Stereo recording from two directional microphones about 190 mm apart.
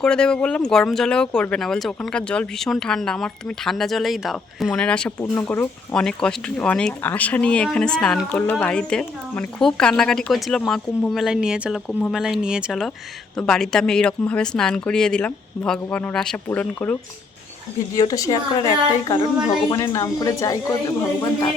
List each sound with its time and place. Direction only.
0.0 s speech: 5° left (ahead or behind)
17.9 s speech: 20° left (ahead or behind)